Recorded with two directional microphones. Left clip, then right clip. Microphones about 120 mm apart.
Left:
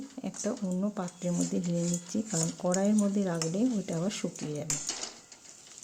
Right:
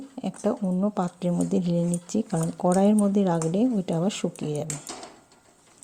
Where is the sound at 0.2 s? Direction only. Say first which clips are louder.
Right 8 dB; 40° right (ahead or behind).